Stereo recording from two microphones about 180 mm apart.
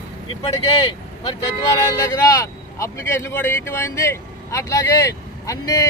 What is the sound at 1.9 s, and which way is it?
Speech, 20° left (ahead or behind).